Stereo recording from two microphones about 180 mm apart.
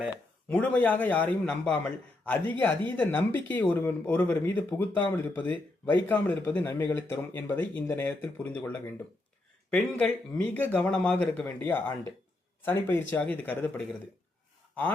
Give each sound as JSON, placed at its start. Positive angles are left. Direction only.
{"t": 0.4, "sound": "a man's voice", "side_deg": 10}